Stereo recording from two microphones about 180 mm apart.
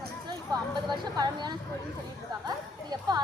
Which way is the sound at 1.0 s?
25° right (ahead or behind).